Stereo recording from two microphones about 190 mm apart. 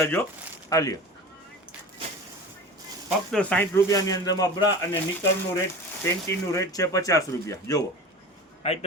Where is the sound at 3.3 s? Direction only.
10° left (ahead or behind).